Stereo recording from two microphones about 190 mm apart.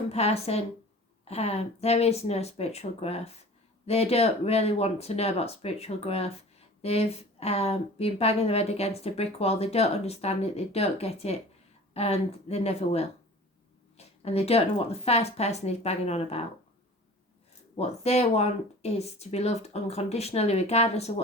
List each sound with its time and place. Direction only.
0.1 s a woman's voice: 35° left (ahead or behind)
17.7 s a woman's voice: 35° left (ahead or behind)